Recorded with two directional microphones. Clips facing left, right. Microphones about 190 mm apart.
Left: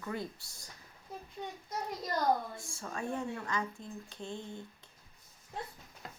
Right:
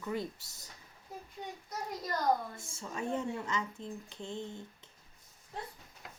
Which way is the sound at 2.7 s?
20° right (ahead or behind).